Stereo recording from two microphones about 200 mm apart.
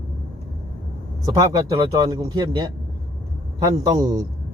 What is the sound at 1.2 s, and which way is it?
Speech, 20° right (ahead or behind).